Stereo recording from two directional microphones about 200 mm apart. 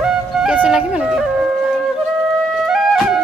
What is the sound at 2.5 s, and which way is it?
Music, centre (ahead or behind).